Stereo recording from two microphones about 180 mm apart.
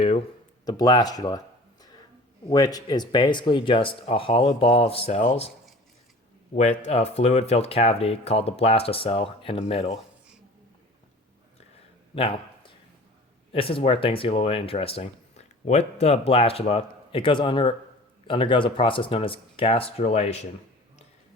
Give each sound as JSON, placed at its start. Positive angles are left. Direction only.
{"t": 0.6, "sound": "speech", "side_deg": 20}
{"t": 2.5, "sound": "speech", "side_deg": 20}
{"t": 6.5, "sound": "speech", "side_deg": 40}
{"t": 12.1, "sound": "a sound", "side_deg": 30}
{"t": 13.5, "sound": "speech", "side_deg": 30}